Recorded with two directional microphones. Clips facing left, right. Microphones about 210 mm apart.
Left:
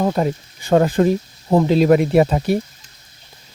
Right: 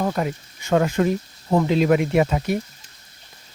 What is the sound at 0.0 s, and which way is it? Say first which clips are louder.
Speech: left 5 dB; 30° left (ahead or behind).